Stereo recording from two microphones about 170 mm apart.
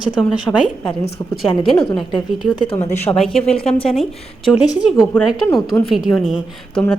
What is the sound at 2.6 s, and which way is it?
Speech, 35° left (ahead or behind).